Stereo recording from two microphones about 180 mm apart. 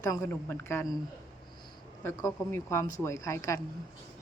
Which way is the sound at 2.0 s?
15° left (ahead or behind).